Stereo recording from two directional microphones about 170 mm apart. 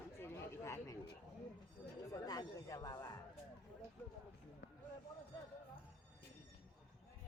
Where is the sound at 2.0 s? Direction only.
20° left (ahead or behind).